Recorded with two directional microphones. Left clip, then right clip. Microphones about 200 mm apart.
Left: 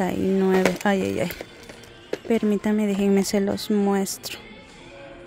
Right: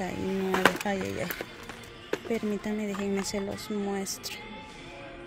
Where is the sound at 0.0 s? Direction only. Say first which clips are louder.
Left 9 dB; 40° left (ahead or behind).